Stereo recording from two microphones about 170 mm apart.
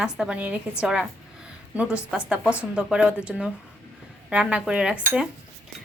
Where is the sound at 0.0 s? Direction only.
5° right (ahead or behind).